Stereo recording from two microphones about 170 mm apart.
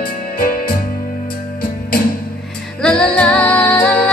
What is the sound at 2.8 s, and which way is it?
Music, 5° left (ahead or behind).